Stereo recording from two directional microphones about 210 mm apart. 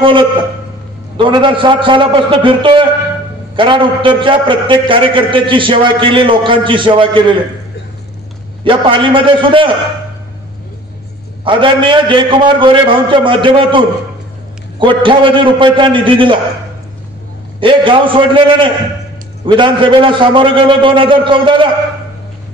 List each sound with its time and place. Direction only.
1.1 s a man's voice: 25° right (ahead or behind)
8.6 s a man's voice: 25° right (ahead or behind)
11.4 s a man's voice: 25° right (ahead or behind)
17.6 s a man's voice: 25° right (ahead or behind)